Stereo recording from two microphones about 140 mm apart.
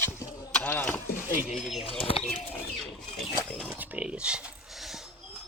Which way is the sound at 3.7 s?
10° right (ahead or behind).